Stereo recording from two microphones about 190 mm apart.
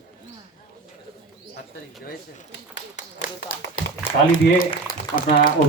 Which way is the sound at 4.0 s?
45° left (ahead or behind).